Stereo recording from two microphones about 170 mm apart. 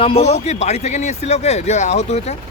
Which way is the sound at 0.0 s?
35° left (ahead or behind).